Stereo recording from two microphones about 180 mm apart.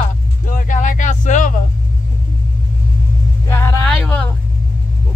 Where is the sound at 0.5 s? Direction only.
45° left (ahead or behind).